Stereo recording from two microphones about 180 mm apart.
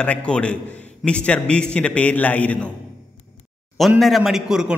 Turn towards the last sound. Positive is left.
turn(degrees=-5)  # may be behind; listen again after turning